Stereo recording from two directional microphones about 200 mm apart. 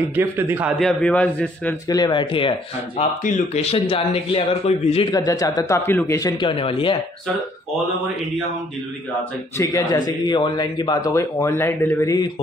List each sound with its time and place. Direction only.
0.1 s a man's voice: 10° right (ahead or behind)
0.7 s speech: 5° left (ahead or behind)
1.9 s a man's voice: 20° left (ahead or behind)
3.5 s a man's voice: 30° left (ahead or behind)
5.1 s a man's voice: 20° left (ahead or behind)
9.6 s speech: 20° left (ahead or behind)